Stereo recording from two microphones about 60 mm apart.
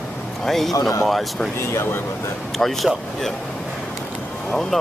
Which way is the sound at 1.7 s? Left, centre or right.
Left.